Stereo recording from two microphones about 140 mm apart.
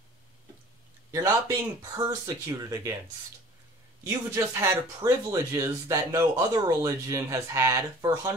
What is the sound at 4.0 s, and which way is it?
A man's voice, 20° right (ahead or behind).